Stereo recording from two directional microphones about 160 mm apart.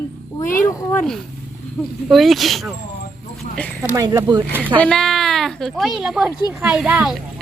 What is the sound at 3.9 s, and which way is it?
Speech, 25° right (ahead or behind).